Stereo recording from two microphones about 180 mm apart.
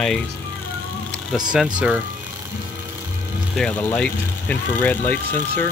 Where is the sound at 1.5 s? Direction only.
5° right (ahead or behind).